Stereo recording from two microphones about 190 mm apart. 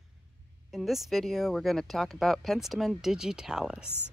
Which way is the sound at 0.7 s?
Centre (ahead or behind).